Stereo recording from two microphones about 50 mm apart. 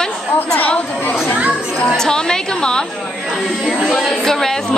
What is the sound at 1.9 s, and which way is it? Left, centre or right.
A woman's voice, centre.